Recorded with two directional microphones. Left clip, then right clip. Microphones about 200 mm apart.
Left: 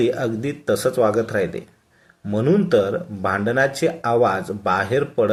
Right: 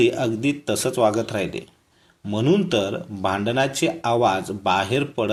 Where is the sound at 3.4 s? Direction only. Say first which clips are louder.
Left 4 dB; 10° right (ahead or behind).